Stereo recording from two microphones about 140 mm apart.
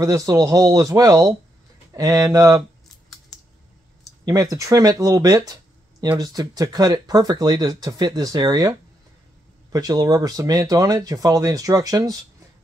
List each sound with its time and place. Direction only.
0.0 s speech: 25° right (ahead or behind)
4.2 s speech: 25° right (ahead or behind)